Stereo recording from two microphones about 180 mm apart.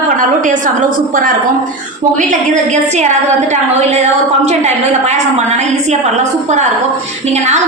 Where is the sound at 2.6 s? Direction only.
40° right (ahead or behind).